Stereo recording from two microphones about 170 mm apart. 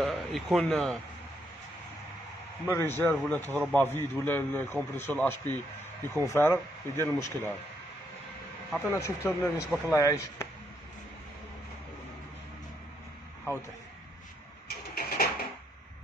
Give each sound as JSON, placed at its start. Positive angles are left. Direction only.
{"t": 0.0, "sound": "speech", "side_deg": 0}
{"t": 2.7, "sound": "a man's voice", "side_deg": 15}
{"t": 8.7, "sound": "a man's voice", "side_deg": 15}
{"t": 15.0, "sound": "a sound", "side_deg": 65}